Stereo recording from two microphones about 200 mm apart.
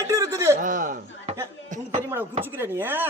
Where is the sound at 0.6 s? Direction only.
40° right (ahead or behind).